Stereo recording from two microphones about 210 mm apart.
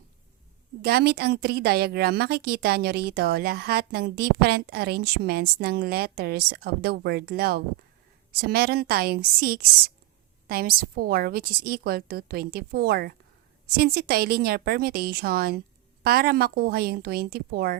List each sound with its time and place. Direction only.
0.8 s a woman's voice: 50° right (ahead or behind)